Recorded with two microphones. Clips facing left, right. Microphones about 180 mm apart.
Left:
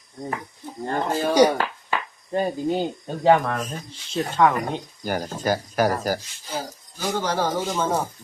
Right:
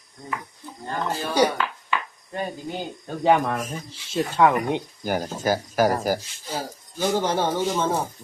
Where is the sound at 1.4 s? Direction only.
40° left (ahead or behind).